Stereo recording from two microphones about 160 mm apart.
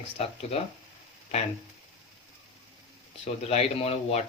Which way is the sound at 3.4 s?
40° left (ahead or behind).